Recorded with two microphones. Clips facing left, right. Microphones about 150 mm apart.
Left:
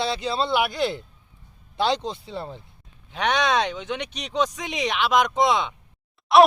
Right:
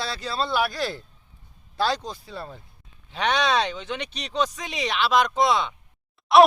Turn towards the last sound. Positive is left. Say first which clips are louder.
# even
turn(degrees=0)  # may be behind; listen again after turning